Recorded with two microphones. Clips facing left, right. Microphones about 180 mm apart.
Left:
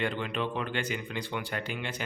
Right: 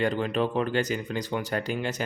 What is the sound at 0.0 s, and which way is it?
Speech, 40° right (ahead or behind).